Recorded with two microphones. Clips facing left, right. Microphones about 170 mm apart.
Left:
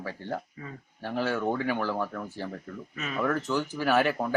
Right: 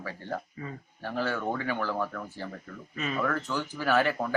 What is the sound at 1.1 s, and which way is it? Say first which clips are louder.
Speech: left 2 dB; 20° left (ahead or behind).